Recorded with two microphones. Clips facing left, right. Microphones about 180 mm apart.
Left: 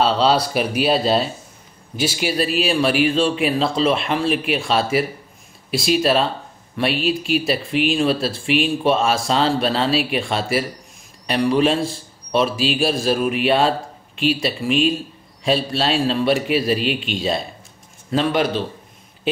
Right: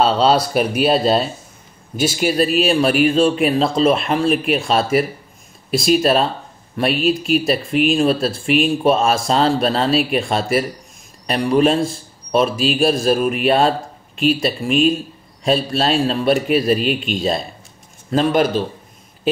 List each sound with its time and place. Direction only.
0.0 s speech: centre (ahead or behind)
2.0 s speech: 45° right (ahead or behind)